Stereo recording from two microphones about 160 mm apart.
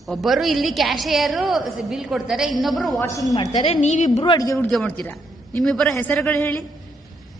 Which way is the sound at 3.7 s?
45° left (ahead or behind).